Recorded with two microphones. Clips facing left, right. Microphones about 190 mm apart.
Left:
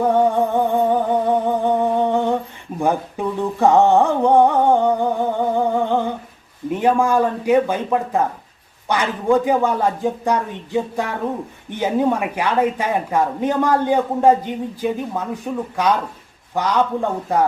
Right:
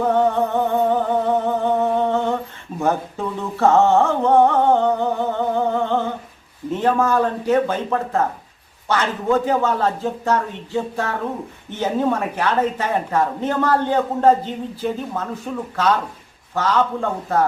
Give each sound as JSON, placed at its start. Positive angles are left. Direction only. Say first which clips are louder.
{"t": 0.1, "sound": "humming", "louder": "left 1 dB", "side_deg": 10}
{"t": 2.7, "sound": "speech", "louder": "left 1 dB", "side_deg": 15}